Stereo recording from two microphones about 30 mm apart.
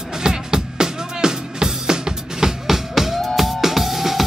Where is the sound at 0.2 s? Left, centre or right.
Right.